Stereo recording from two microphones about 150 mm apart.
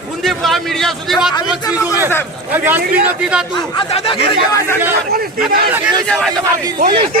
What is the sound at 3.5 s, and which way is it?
Speech, 35° left (ahead or behind).